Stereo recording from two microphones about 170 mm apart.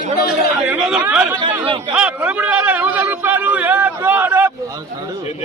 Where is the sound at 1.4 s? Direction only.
30° right (ahead or behind).